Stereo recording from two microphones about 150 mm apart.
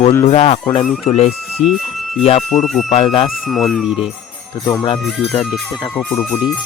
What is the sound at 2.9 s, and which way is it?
Speech, 40° left (ahead or behind).